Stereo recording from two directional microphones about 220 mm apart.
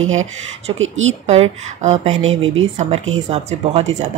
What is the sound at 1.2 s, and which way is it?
Speech, 30° right (ahead or behind).